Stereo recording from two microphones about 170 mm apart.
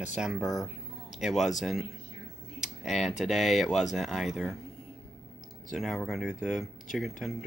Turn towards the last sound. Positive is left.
turn(degrees=0)  # may be behind; listen again after turning